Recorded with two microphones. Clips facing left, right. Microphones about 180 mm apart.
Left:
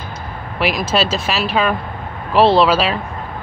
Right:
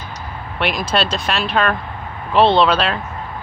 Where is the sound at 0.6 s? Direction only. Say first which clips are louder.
Left 2 dB; centre (ahead or behind).